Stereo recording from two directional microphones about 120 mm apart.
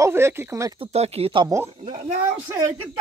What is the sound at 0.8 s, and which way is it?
Speech, 60° right (ahead or behind).